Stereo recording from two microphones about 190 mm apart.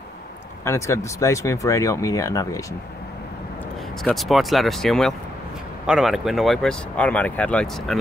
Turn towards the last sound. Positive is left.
turn(degrees=5)  # may be behind; listen again after turning